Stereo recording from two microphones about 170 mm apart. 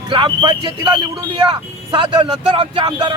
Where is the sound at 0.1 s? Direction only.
30° right (ahead or behind).